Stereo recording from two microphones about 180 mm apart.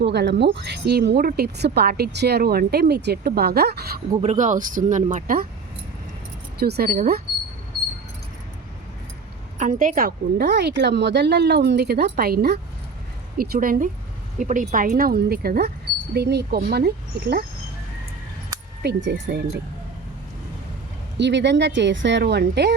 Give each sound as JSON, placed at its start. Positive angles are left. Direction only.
{"t": 0.0, "sound": "speech", "side_deg": -70}
{"t": 4.2, "sound": "speech", "side_deg": -40}
{"t": 6.6, "sound": "speech", "side_deg": -60}
{"t": 9.6, "sound": "speech", "side_deg": -45}
{"t": 18.8, "sound": "speech", "side_deg": -75}
{"t": 21.2, "sound": "speech", "side_deg": -75}